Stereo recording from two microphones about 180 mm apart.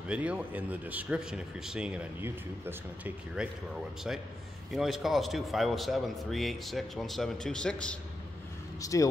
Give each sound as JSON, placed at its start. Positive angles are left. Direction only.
{"t": 0.1, "sound": "speech", "side_deg": -5}
{"t": 4.7, "sound": "speech", "side_deg": 0}
{"t": 8.8, "sound": "speech", "side_deg": 20}